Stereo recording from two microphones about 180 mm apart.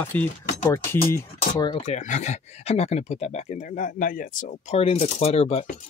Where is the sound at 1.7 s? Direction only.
35° left (ahead or behind).